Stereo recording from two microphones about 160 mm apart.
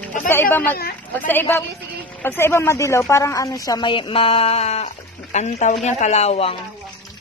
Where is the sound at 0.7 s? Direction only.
70° left (ahead or behind).